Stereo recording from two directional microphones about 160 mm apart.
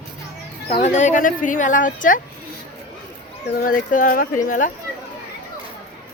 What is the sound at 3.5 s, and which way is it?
Speech, 60° left (ahead or behind).